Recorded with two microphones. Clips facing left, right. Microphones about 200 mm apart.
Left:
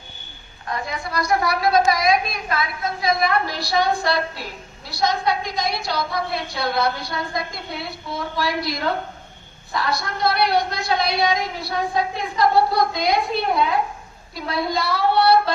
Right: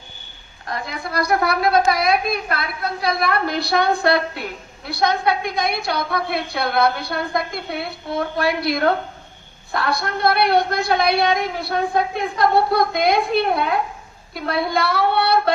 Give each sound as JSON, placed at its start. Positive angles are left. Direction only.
{"t": 0.9, "sound": "a woman's voice", "side_deg": -60}